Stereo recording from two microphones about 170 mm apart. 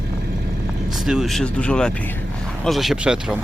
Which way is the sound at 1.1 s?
Centre (ahead or behind).